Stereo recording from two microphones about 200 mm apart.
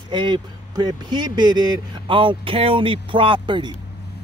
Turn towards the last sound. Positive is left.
turn(degrees=-25)  # may be behind; listen again after turning